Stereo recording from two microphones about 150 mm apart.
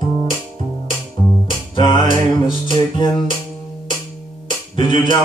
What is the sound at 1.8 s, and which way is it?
Music, 30° left (ahead or behind).